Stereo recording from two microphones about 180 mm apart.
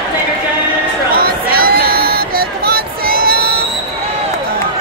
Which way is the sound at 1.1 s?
55° right (ahead or behind).